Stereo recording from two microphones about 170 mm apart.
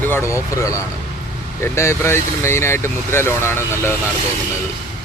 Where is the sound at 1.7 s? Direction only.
15° left (ahead or behind).